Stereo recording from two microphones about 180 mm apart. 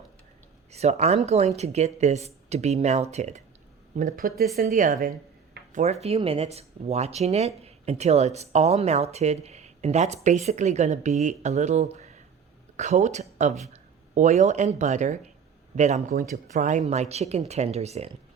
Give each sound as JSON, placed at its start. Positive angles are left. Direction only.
{"t": 0.7, "sound": "speech", "side_deg": -35}
{"t": 3.9, "sound": "a woman's voice", "side_deg": -50}